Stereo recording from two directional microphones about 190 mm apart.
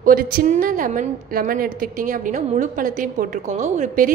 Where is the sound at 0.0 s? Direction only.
50° right (ahead or behind).